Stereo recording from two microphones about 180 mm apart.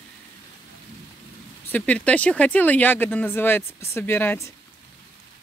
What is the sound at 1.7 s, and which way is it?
Speech, 10° left (ahead or behind).